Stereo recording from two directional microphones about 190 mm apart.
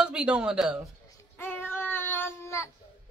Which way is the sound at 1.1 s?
10° left (ahead or behind).